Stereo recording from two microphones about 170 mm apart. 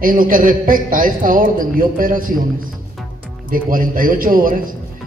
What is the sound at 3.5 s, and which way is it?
A man's voice, 55° right (ahead or behind).